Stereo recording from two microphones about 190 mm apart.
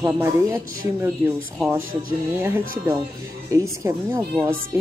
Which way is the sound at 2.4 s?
10° right (ahead or behind).